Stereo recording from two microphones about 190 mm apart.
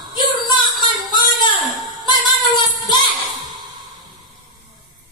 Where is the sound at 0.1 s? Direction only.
20° left (ahead or behind).